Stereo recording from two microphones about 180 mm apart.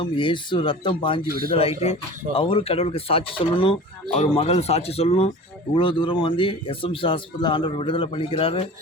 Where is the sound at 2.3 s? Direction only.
30° left (ahead or behind).